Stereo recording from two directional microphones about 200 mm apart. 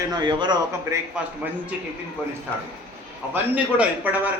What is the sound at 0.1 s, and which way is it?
Speech, 20° right (ahead or behind).